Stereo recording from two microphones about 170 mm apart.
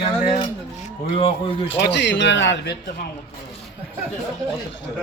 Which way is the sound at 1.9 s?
90° left.